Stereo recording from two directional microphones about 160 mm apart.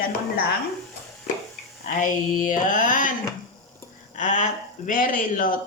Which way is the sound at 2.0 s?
55° left (ahead or behind).